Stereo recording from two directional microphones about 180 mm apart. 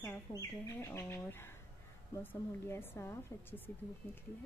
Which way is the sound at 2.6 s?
15° left (ahead or behind).